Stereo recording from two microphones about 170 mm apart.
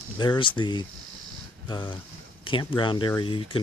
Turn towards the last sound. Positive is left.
turn(degrees=30)  # may be behind; listen again after turning